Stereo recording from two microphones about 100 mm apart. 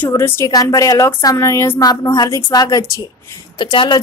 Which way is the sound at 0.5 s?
35° left (ahead or behind).